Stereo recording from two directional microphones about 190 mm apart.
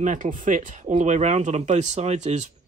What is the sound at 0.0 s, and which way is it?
Speech, 40° right (ahead or behind).